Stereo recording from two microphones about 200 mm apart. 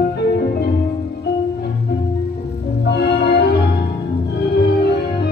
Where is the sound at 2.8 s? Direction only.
55° left (ahead or behind).